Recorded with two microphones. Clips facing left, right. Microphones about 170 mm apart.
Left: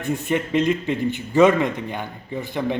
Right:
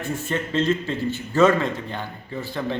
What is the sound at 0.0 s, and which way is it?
A man's voice, 15° left (ahead or behind).